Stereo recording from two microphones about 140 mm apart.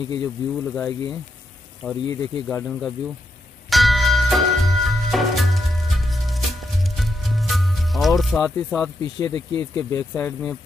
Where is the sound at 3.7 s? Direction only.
Centre (ahead or behind).